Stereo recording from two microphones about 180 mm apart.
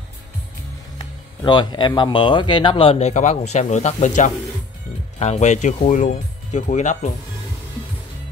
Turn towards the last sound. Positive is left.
turn(degrees=40)  # may be behind; listen again after turning